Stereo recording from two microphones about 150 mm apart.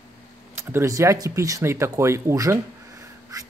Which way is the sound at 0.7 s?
20° right (ahead or behind).